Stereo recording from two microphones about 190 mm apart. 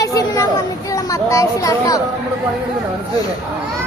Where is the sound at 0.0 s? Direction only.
20° left (ahead or behind).